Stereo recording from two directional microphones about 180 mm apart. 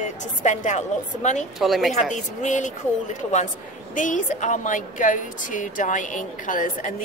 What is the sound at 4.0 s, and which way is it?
A woman's voice, 45° left (ahead or behind).